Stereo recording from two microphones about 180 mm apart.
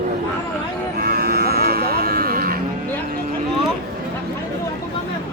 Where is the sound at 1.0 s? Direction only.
55° right (ahead or behind).